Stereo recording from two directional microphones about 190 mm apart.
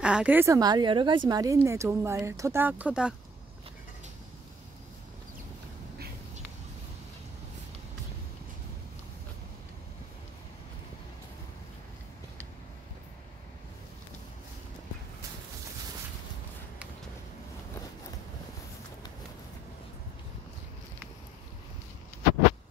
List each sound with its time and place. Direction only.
0.0 s speech: 5° right (ahead or behind)